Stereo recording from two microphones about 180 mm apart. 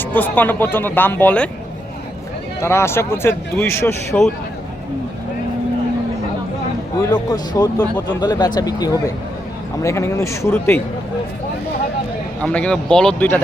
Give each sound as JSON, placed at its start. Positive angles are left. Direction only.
{"t": 0.0, "sound": "speech", "side_deg": 10}
{"t": 2.6, "sound": "speech", "side_deg": 15}
{"t": 7.1, "sound": "speech", "side_deg": 20}
{"t": 12.4, "sound": "speech", "side_deg": 5}